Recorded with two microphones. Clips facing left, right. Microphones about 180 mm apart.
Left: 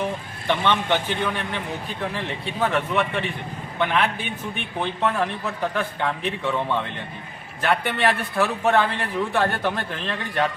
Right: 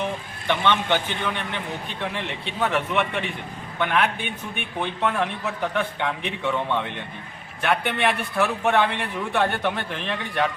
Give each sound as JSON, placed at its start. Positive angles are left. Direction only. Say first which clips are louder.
{"t": 0.4, "sound": "a man's voice", "louder": "even", "side_deg": 10}
{"t": 2.0, "sound": "a man's voice", "louder": "left 1 dB", "side_deg": 0}
{"t": 4.8, "sound": "a man's voice", "louder": "left 1 dB", "side_deg": 0}
{"t": 7.6, "sound": "a man's voice", "louder": "left 1 dB", "side_deg": 0}